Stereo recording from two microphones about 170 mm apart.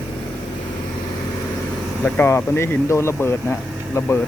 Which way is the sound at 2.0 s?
10° left (ahead or behind).